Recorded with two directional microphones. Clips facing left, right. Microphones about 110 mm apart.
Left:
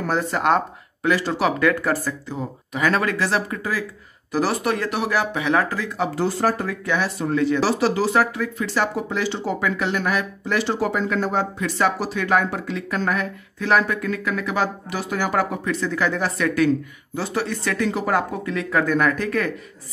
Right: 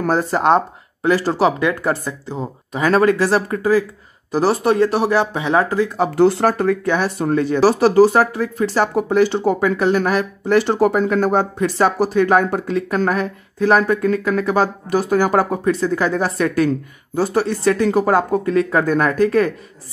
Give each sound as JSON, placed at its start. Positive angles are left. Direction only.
{"t": 0.0, "sound": "speech", "side_deg": -35}
{"t": 1.6, "sound": "speech", "side_deg": -25}
{"t": 6.1, "sound": "speech", "side_deg": -65}
{"t": 9.6, "sound": "speech", "side_deg": -40}